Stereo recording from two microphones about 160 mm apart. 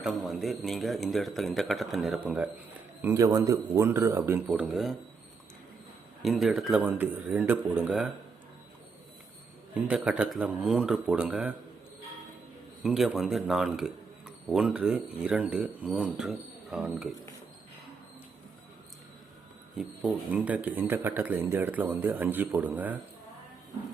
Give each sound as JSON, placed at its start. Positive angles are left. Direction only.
{"t": 0.0, "sound": "speech", "side_deg": 0}
{"t": 3.0, "sound": "a man's voice", "side_deg": -15}
{"t": 6.2, "sound": "a man's voice", "side_deg": 0}
{"t": 9.7, "sound": "speech", "side_deg": -5}
{"t": 12.8, "sound": "speech", "side_deg": 0}
{"t": 19.7, "sound": "a man's voice", "side_deg": -5}